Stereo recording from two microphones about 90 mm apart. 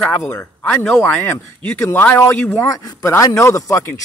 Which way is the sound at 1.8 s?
25° left (ahead or behind).